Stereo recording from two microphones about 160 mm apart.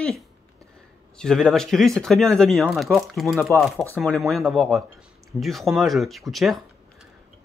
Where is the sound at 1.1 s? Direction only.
5° left (ahead or behind).